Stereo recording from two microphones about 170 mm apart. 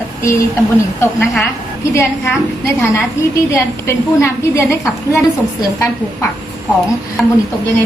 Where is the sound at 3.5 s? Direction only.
15° left (ahead or behind).